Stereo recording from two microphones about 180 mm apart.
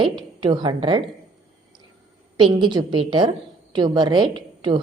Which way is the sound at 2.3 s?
25° right (ahead or behind).